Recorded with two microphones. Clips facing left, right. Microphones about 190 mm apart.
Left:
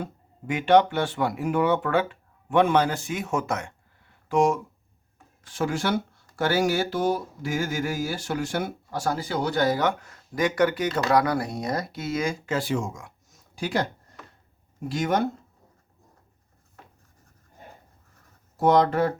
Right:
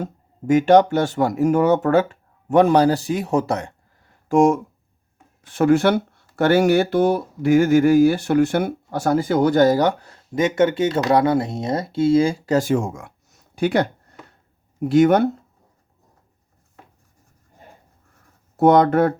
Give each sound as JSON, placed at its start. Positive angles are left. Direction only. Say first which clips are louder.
{"t": 0.0, "sound": "speech", "louder": "right 6 dB", "side_deg": -45}
{"t": 5.4, "sound": "speech", "louder": "right 11 dB", "side_deg": -60}
{"t": 14.8, "sound": "speech", "louder": "right 10 dB", "side_deg": -60}
{"t": 18.5, "sound": "speech", "louder": "right 6 dB", "side_deg": -60}